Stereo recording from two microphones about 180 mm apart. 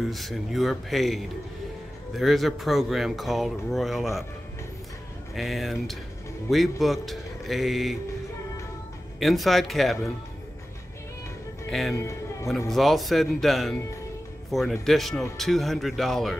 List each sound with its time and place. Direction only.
0.1 s speech: centre (ahead or behind)
5.3 s speech: centre (ahead or behind)
9.2 s speech: centre (ahead or behind)
11.9 s a man's voice: 15° left (ahead or behind)
12.4 s speech: centre (ahead or behind)